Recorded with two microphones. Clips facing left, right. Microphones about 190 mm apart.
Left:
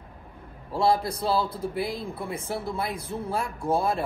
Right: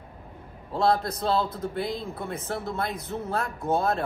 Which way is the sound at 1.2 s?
5° left (ahead or behind).